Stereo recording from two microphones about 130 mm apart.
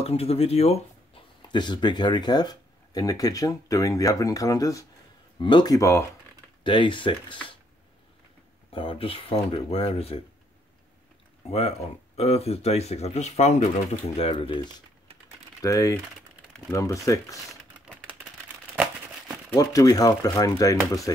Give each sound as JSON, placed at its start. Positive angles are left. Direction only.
{"t": 0.0, "sound": "speech", "side_deg": 50}
{"t": 1.5, "sound": "speech", "side_deg": 35}
{"t": 6.6, "sound": "speech", "side_deg": 40}
{"t": 8.7, "sound": "speech", "side_deg": 45}
{"t": 12.2, "sound": "speech", "side_deg": 50}
{"t": 15.6, "sound": "speech", "side_deg": 25}
{"t": 17.5, "sound": "typewriter", "side_deg": -10}
{"t": 19.5, "sound": "speech", "side_deg": 25}